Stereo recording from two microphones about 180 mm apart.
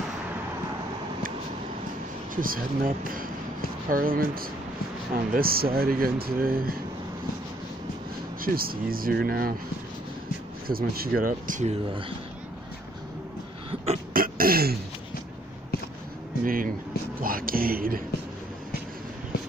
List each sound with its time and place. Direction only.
2.3 s speech: 50° right (ahead or behind)
8.4 s speech: 55° right (ahead or behind)
10.7 s speech: 55° right (ahead or behind)
14.1 s throat clearing: 55° right (ahead or behind)
16.4 s speech: 50° right (ahead or behind)